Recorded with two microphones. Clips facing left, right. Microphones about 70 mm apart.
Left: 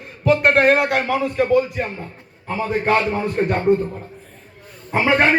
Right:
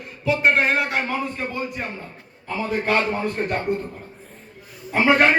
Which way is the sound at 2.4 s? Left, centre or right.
Left.